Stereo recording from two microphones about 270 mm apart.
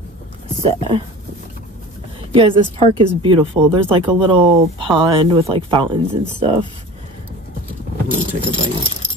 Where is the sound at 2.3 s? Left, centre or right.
Centre.